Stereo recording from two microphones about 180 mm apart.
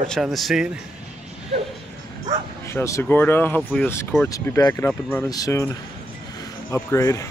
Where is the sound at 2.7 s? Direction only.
15° left (ahead or behind).